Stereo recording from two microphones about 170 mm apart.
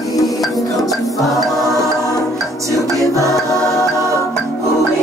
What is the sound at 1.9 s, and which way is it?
Music, 20° left (ahead or behind).